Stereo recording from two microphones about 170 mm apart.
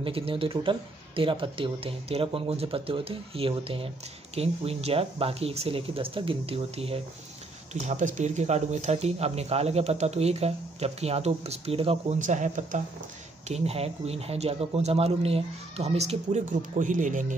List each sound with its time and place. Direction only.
0.0 s speech: 35° right (ahead or behind)
7.8 s speech: 45° right (ahead or behind)
12.2 s speech: 50° right (ahead or behind)